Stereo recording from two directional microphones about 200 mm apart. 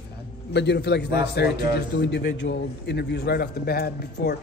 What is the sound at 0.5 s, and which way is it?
A man's voice, 55° left (ahead or behind).